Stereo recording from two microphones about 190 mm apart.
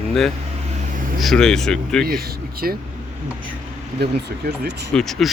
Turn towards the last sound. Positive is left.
turn(degrees=0)  # may be behind; listen again after turning